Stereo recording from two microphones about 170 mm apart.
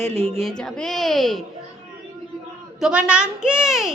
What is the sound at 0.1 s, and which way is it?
Speech, 40° right (ahead or behind).